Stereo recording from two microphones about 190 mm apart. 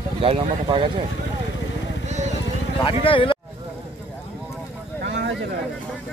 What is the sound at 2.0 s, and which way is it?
Vehicle, 40° right (ahead or behind).